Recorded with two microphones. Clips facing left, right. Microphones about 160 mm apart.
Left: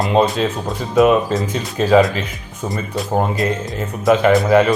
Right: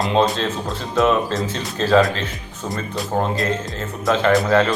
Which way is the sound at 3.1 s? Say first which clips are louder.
Left 2 dB; 5° left (ahead or behind).